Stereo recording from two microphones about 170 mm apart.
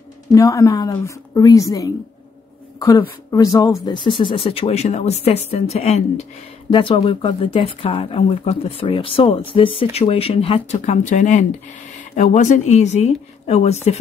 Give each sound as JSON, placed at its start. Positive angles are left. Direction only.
{"t": 0.3, "sound": "a woman's voice", "side_deg": 20}